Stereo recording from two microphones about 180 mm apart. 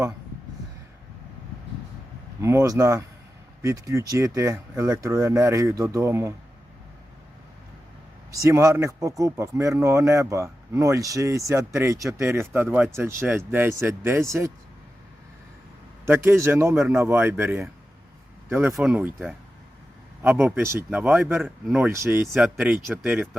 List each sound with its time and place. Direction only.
2.4 s speech: 15° right (ahead or behind)
8.4 s speech: 15° right (ahead or behind)
16.0 s speech: 15° right (ahead or behind)
22.3 s speech: centre (ahead or behind)